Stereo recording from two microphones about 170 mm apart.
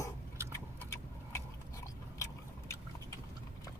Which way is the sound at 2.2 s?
15° left (ahead or behind).